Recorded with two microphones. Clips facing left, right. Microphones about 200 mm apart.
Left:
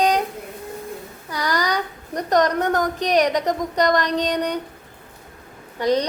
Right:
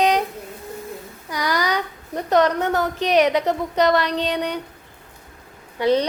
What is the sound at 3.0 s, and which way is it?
Speech, 40° left (ahead or behind).